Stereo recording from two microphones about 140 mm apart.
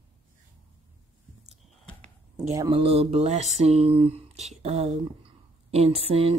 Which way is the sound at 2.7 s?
40° right (ahead or behind).